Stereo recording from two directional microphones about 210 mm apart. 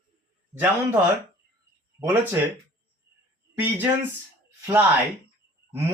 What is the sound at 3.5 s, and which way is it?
Speech, 10° right (ahead or behind).